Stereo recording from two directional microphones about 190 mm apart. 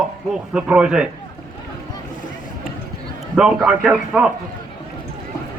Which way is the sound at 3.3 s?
5° right (ahead or behind).